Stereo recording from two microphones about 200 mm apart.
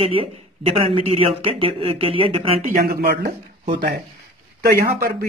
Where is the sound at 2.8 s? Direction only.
50° right (ahead or behind).